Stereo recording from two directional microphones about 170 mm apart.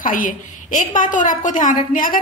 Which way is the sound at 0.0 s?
50° left (ahead or behind).